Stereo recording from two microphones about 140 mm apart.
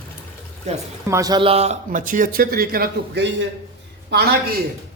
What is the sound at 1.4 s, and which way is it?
Speech, 45° right (ahead or behind).